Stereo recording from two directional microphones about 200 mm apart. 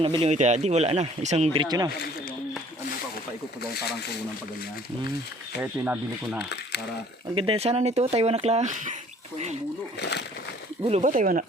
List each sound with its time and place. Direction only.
0.0 s speech: 25° right (ahead or behind)
1.6 s speech: 20° right (ahead or behind)
3.6 s speech: 55° left (ahead or behind)
5.8 s speech: 10° right (ahead or behind)
6.4 s speech: 60° left (ahead or behind)
7.3 s speech: 30° right (ahead or behind)
10.0 s speech: 55° left (ahead or behind)
10.8 s speech: 35° right (ahead or behind)